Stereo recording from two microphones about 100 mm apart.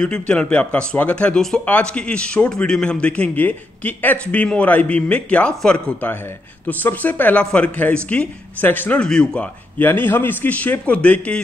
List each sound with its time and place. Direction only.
0.0 s speech: 10° left (ahead or behind)